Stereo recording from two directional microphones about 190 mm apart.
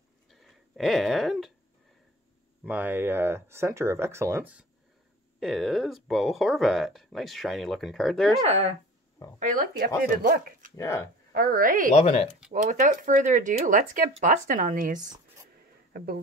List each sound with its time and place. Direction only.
0.3 s a sound: centre (ahead or behind)
2.6 s speech: 10° right (ahead or behind)
8.5 s speech: 35° right (ahead or behind)
9.4 s speech: 45° right (ahead or behind)
10.8 s speech: 15° left (ahead or behind)
11.3 s speech: 50° right (ahead or behind)
11.9 s speech: 35° left (ahead or behind)
12.6 s speech: 40° right (ahead or behind)